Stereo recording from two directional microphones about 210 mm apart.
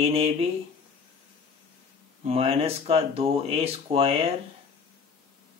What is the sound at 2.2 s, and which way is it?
Speech, 30° right (ahead or behind).